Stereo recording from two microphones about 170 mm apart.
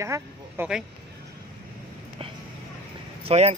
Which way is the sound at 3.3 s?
35° right (ahead or behind).